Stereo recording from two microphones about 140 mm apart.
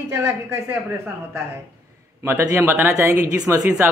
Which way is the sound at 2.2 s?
20° right (ahead or behind).